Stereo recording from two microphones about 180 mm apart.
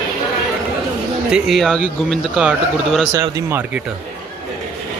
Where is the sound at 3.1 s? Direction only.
20° right (ahead or behind).